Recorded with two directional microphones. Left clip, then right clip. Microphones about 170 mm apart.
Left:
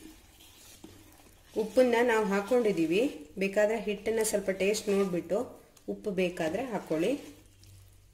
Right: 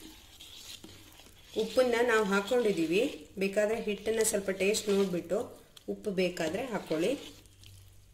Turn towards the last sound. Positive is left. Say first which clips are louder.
# left 1 dB
turn(degrees=5)  # may be behind; listen again after turning